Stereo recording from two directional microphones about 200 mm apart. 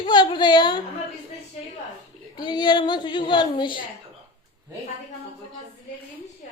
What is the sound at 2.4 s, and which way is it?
A woman's voice, 20° left (ahead or behind).